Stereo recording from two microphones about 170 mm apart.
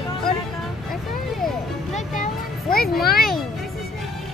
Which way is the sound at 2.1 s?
55° left (ahead or behind).